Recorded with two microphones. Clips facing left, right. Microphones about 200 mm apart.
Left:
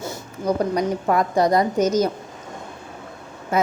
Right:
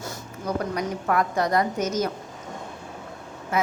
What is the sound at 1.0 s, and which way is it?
Speech, 15° left (ahead or behind).